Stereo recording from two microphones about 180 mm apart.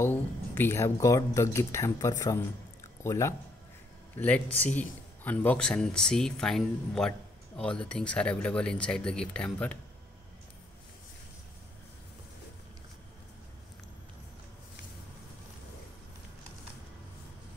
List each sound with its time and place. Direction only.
0.0 s speech: 10° left (ahead or behind)
4.6 s speech: 10° left (ahead or behind)